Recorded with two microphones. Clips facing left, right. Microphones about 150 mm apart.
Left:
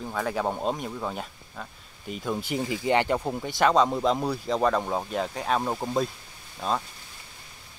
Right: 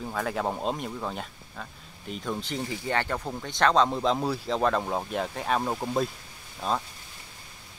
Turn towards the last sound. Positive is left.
turn(degrees=0)  # may be behind; listen again after turning